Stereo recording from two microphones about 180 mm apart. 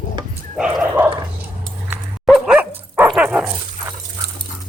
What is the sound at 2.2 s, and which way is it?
Dog, centre (ahead or behind).